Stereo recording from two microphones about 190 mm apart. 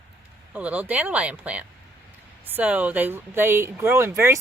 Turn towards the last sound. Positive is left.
turn(degrees=-15)  # may be behind; listen again after turning